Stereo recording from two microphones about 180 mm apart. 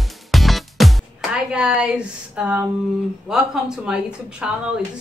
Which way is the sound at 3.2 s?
Centre (ahead or behind).